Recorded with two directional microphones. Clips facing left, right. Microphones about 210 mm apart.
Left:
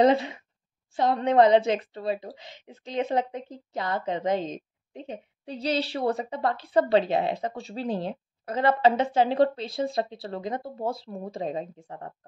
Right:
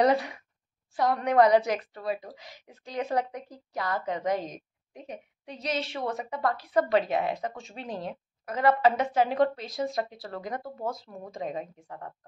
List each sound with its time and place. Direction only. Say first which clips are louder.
0.0 s a woman's voice: left 3 dB; 25° left (ahead or behind)